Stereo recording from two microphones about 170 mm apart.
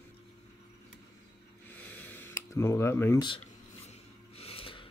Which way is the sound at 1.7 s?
10° left (ahead or behind).